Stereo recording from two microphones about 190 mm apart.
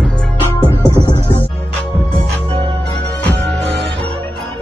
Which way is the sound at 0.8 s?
20° left (ahead or behind).